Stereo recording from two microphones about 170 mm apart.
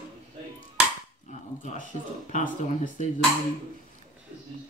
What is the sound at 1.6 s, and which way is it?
Speech, 45° left (ahead or behind).